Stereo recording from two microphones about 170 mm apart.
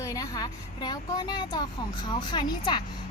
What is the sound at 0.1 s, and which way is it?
A woman's voice, 20° left (ahead or behind).